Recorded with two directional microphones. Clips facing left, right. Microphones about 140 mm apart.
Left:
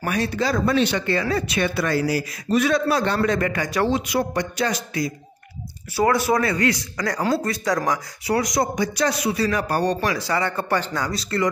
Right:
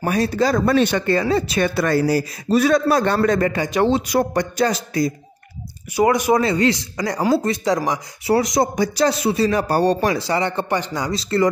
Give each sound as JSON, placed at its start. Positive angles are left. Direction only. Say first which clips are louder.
{"t": 0.0, "sound": "speech", "louder": "right 4 dB", "side_deg": -35}
{"t": 1.2, "sound": "speech", "louder": "right 4 dB", "side_deg": -30}
{"t": 1.6, "sound": "a man's voice", "louder": "right 2 dB", "side_deg": -45}
{"t": 4.1, "sound": "a man's voice", "louder": "right 4 dB", "side_deg": -45}
{"t": 5.9, "sound": "speech", "louder": "right 3 dB", "side_deg": -15}